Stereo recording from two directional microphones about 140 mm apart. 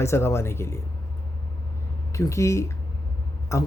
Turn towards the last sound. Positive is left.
turn(degrees=20)  # may be behind; listen again after turning